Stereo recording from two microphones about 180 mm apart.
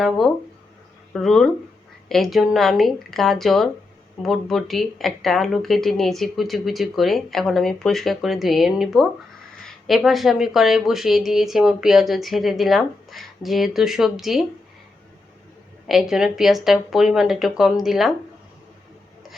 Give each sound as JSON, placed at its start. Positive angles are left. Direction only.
{"t": 1.1, "sound": "speech", "side_deg": 0}
{"t": 15.9, "sound": "speech", "side_deg": 0}